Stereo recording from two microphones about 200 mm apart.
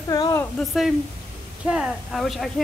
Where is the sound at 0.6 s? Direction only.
Centre (ahead or behind).